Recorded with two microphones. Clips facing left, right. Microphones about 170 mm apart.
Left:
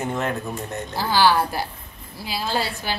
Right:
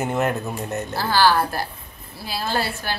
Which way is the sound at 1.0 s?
15° left (ahead or behind).